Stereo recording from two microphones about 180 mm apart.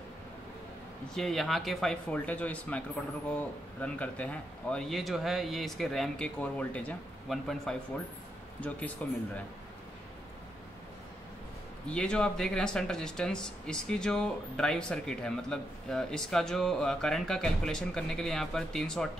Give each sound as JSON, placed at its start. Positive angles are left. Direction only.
{"t": 1.1, "sound": "speech", "side_deg": 0}
{"t": 11.9, "sound": "speech", "side_deg": 5}